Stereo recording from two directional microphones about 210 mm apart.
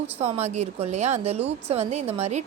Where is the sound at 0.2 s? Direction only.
30° right (ahead or behind).